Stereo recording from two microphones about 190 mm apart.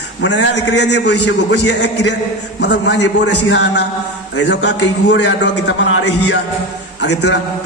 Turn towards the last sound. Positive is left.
turn(degrees=65)  # may be behind; listen again after turning